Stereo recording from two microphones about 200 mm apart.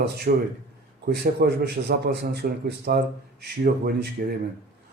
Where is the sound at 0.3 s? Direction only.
50° right (ahead or behind).